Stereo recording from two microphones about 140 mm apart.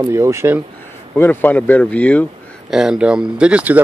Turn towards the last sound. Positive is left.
turn(degrees=-10)  # may be behind; listen again after turning